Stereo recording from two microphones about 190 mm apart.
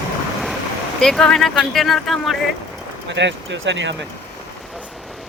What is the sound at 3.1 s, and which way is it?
Speech, 70° right (ahead or behind).